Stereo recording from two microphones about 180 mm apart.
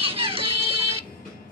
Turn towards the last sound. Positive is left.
turn(degrees=-30)  # may be behind; listen again after turning